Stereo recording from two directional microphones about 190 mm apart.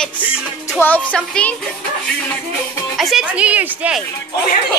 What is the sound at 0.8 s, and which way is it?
Speech, 10° left (ahead or behind).